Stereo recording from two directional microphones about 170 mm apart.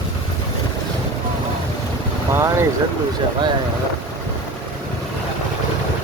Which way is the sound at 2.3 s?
15° right (ahead or behind).